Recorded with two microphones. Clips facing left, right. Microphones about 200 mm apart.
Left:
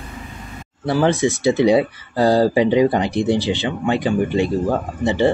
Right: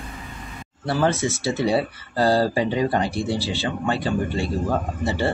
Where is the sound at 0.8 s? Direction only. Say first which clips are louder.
Left 5 dB; 15° left (ahead or behind).